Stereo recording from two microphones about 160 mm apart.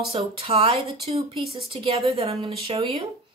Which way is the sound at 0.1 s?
35° right (ahead or behind).